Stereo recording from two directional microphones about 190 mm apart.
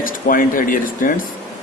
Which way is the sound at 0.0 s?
45° left (ahead or behind).